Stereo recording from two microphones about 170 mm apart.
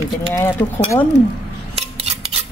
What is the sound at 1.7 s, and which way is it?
Cutlery, 35° right (ahead or behind).